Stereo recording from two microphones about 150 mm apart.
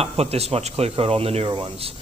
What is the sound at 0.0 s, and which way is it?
Speech, 45° right (ahead or behind).